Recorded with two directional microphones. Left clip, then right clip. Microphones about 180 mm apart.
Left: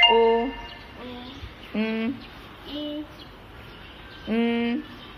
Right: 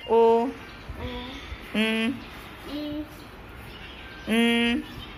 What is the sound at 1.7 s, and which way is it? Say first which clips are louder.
Speech: right 3 dB; 5° left (ahead or behind).